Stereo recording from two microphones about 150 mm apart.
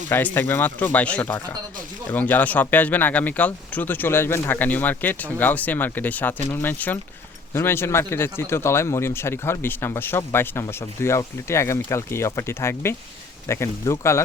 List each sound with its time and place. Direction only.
0.1 s a man's voice: 10° left (ahead or behind)